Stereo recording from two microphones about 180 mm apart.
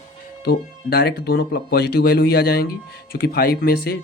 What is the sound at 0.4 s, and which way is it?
Speech, 65° left (ahead or behind).